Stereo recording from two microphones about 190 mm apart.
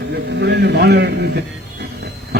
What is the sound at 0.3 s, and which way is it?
Speech, 60° right (ahead or behind).